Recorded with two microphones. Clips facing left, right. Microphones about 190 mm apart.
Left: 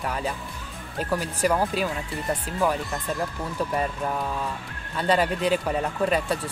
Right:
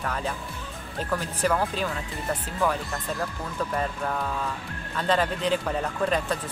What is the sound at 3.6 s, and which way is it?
Speech, 15° left (ahead or behind).